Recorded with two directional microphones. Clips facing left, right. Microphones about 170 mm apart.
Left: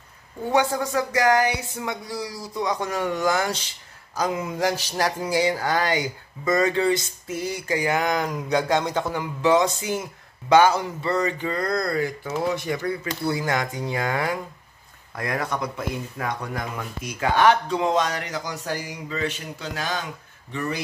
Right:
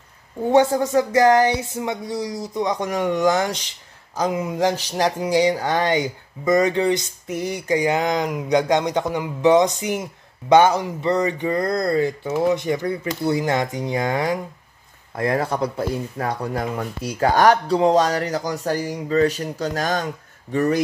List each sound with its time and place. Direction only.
0.5 s speech: 25° right (ahead or behind); by 20.8 s 45° right (ahead or behind)